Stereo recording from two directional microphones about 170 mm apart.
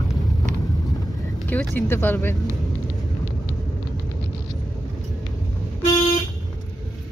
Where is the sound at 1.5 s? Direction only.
10° left (ahead or behind).